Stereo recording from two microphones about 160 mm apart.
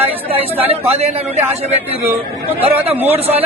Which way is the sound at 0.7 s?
40° right (ahead or behind).